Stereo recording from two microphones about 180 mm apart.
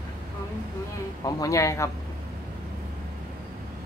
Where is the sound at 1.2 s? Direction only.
20° left (ahead or behind).